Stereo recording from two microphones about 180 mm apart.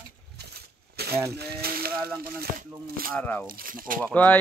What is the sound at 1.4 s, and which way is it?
Speech, 60° right (ahead or behind).